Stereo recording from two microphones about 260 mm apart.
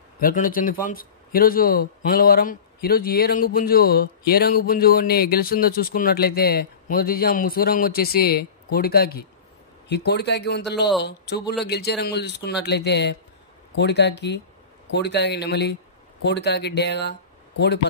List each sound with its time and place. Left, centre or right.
0.2 s a man's voice: left